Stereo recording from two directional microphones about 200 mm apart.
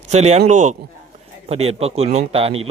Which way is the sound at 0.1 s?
35° right (ahead or behind).